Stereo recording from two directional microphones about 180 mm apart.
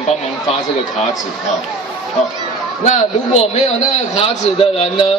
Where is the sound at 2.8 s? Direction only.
40° left (ahead or behind).